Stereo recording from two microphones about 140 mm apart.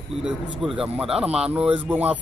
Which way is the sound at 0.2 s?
5° right (ahead or behind).